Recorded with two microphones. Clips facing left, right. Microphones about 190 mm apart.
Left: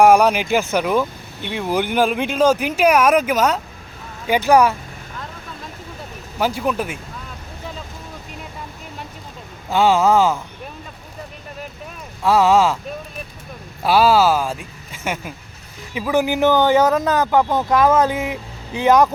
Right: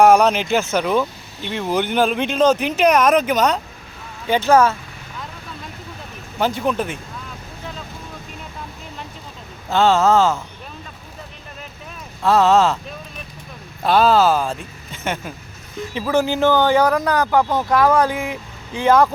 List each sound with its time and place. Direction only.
0.0 s speech: 10° left (ahead or behind)
6.4 s speech: 5° left (ahead or behind)
9.6 s speech: 10° left (ahead or behind)
12.2 s speech: 10° left (ahead or behind)
13.8 s speech: 10° left (ahead or behind)